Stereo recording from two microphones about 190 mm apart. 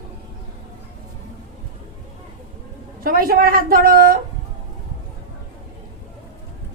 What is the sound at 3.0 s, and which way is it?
A woman's voice, 50° right (ahead or behind).